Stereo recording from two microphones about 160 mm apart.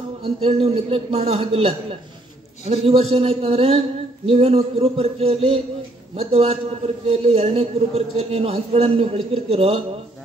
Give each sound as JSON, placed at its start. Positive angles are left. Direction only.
{"t": 0.2, "sound": "a man's voice", "side_deg": -40}